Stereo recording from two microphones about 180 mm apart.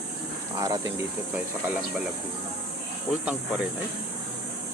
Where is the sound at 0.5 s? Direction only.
20° right (ahead or behind).